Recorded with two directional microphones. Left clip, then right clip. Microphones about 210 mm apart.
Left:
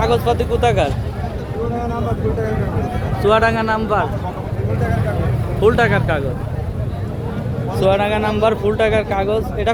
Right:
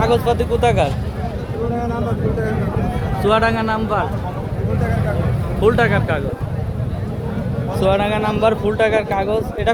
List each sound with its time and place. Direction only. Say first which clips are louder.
0.0 s speech: even; centre (ahead or behind)
3.2 s speech: left 2 dB; 5° left (ahead or behind)
5.5 s speech: left 1 dB; 5° left (ahead or behind)
7.8 s speech: left 1 dB; 10° left (ahead or behind)